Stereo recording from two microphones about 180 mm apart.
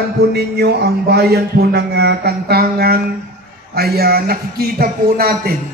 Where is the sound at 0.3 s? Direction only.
65° right (ahead or behind).